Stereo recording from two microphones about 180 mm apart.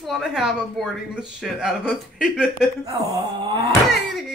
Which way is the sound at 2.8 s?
20° right (ahead or behind).